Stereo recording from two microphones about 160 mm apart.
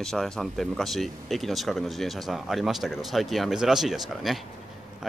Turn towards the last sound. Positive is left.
turn(degrees=0)  # may be behind; listen again after turning